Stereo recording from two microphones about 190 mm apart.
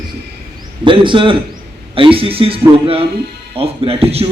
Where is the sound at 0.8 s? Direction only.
25° right (ahead or behind).